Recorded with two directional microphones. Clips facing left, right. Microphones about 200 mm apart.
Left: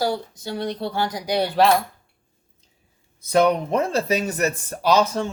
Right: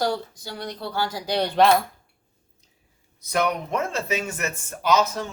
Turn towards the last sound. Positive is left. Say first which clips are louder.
# left 3 dB
turn(degrees=30)  # may be behind; listen again after turning